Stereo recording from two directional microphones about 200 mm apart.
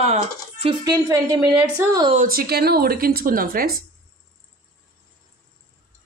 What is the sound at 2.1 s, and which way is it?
A woman's voice, 45° right (ahead or behind).